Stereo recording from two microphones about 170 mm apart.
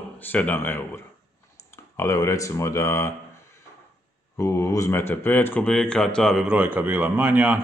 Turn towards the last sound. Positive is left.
turn(degrees=-10)  # may be behind; listen again after turning